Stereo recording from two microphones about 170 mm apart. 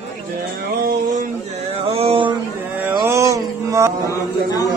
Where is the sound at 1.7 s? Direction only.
35° right (ahead or behind).